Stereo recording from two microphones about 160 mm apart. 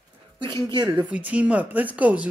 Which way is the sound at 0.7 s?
25° right (ahead or behind).